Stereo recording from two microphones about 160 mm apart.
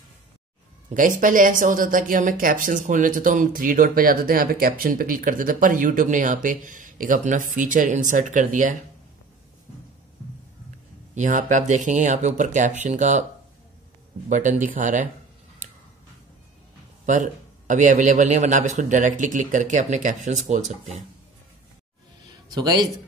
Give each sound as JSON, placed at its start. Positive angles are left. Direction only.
{"t": 0.8, "sound": "speech", "side_deg": -55}
{"t": 11.1, "sound": "a man's voice", "side_deg": -50}
{"t": 14.6, "sound": "speech", "side_deg": -55}
{"t": 17.0, "sound": "a man's voice", "side_deg": -50}
{"t": 22.5, "sound": "speech", "side_deg": -25}